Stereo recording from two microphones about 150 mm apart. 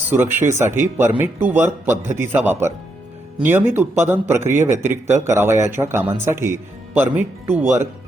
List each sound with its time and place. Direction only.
0.1 s speech: 15° right (ahead or behind)